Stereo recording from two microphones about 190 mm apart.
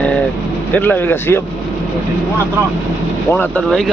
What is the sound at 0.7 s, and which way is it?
Speech, 10° left (ahead or behind).